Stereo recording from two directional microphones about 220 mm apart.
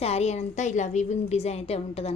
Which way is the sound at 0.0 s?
30° left (ahead or behind).